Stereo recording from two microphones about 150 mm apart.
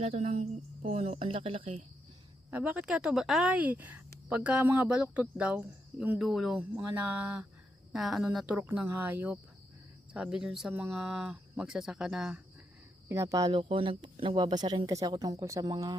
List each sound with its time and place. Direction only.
0.0 s a woman's voice: 40° right (ahead or behind)
2.5 s speech: 10° right (ahead or behind)
13.1 s speech: 20° right (ahead or behind)